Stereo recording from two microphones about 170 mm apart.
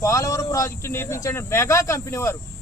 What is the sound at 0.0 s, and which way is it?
Speech, 20° left (ahead or behind).